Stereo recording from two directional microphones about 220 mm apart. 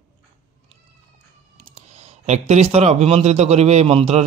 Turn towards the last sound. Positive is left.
turn(degrees=-25)  # may be behind; listen again after turning